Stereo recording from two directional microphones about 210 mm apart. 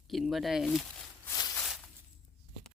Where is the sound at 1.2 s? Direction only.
15° left (ahead or behind).